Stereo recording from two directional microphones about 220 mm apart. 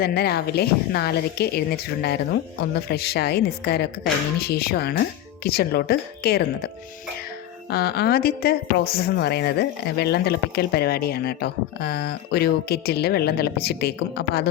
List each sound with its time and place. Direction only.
0.0 s a woman's voice: 45° left (ahead or behind)
7.7 s a woman's voice: 45° left (ahead or behind)